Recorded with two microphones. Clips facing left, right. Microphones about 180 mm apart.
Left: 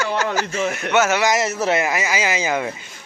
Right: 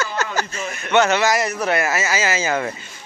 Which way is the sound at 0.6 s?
70° left (ahead or behind).